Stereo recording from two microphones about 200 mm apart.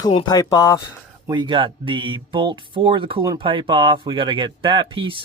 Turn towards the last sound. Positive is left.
turn(degrees=-25)  # may be behind; listen again after turning